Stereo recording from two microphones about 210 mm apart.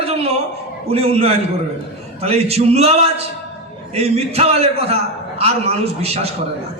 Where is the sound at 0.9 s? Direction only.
30° right (ahead or behind).